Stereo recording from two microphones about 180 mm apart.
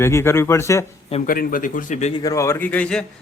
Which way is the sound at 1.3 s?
50° left (ahead or behind).